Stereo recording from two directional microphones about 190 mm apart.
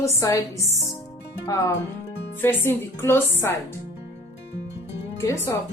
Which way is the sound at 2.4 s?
10° left (ahead or behind).